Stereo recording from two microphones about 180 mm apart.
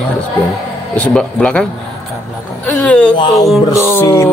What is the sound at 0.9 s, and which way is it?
Speech, 5° left (ahead or behind).